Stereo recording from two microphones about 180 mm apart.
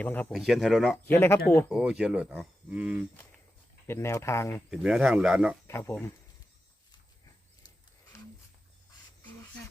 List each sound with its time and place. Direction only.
0.0 s speech: 10° left (ahead or behind)
0.3 s speech: centre (ahead or behind)
1.0 s speech: 15° left (ahead or behind)
1.4 s speech: 60° left (ahead or behind)
1.7 s speech: 5° right (ahead or behind)
3.8 s speech: 15° left (ahead or behind)
4.7 s speech: 5° right (ahead or behind)
5.9 s speech: 10° left (ahead or behind)
8.1 s a sound: 15° left (ahead or behind)